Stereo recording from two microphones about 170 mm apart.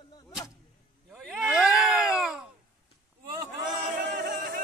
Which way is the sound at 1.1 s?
Centre (ahead or behind).